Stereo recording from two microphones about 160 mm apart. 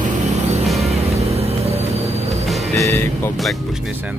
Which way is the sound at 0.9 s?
40° right (ahead or behind).